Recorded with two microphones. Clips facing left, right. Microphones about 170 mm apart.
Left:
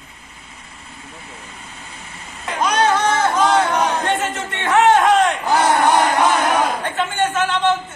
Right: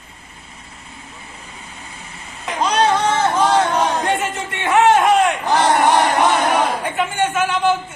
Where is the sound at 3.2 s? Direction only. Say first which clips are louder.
Even; 10° right (ahead or behind).